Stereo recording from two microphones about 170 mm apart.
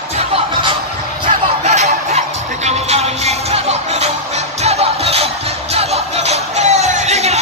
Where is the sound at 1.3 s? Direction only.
40° right (ahead or behind).